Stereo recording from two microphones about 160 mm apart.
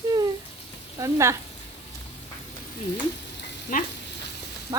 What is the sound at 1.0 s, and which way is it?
Speech, 20° right (ahead or behind).